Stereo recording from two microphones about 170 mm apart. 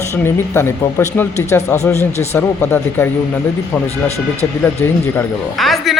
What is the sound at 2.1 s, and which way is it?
Speech, 40° left (ahead or behind).